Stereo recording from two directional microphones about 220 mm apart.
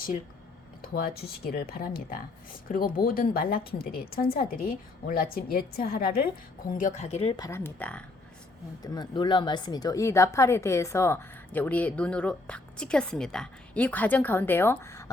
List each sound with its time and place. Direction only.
0.8 s a woman's voice: 45° left (ahead or behind); by 8.0 s 5° left (ahead or behind)
8.8 s speech: 20° left (ahead or behind)